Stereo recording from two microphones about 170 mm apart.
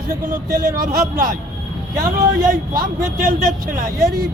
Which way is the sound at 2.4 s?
55° right (ahead or behind).